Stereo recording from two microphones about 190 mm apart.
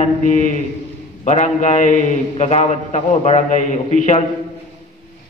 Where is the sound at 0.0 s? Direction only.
40° left (ahead or behind).